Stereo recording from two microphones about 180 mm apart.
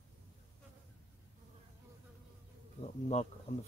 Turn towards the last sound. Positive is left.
turn(degrees=35)  # may be behind; listen again after turning